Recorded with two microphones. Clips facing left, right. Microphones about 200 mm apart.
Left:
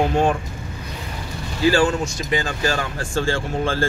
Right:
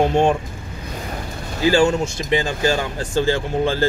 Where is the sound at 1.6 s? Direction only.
20° right (ahead or behind).